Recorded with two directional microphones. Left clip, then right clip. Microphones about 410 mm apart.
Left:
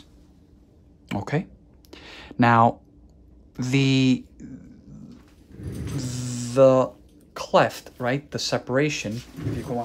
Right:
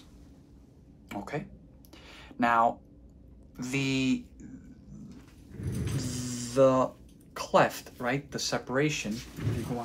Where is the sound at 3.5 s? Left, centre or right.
Left.